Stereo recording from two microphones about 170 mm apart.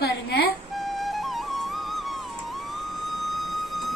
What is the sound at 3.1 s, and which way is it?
Vehicle, centre (ahead or behind).